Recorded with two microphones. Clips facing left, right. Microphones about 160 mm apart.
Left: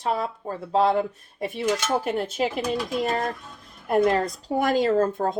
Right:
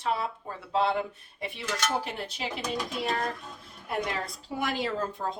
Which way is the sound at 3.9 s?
45° left (ahead or behind).